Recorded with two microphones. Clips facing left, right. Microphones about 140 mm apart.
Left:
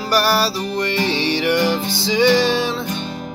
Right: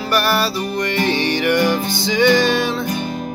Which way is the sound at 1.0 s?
55° right (ahead or behind).